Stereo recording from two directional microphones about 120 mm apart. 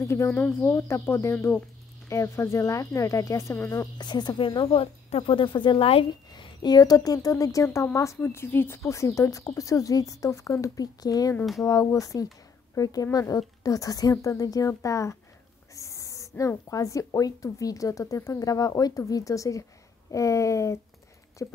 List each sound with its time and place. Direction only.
0.0 s a woman's voice: 25° left (ahead or behind)
4.0 s speech: 35° left (ahead or behind)
6.0 s a woman's voice: 35° left (ahead or behind)